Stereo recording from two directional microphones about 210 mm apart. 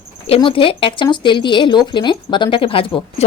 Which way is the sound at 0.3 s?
25° left (ahead or behind).